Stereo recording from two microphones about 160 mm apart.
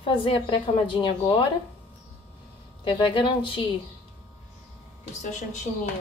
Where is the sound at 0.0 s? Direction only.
35° left (ahead or behind).